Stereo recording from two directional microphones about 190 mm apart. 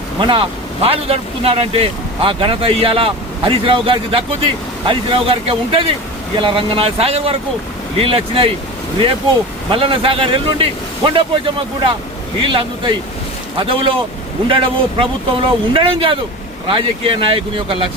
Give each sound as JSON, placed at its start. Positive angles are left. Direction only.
{"t": 0.2, "sound": "speech", "side_deg": -25}
{"t": 9.7, "sound": "speech", "side_deg": -30}